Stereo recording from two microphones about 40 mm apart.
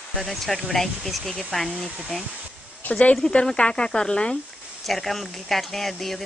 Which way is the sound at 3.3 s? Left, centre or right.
Left.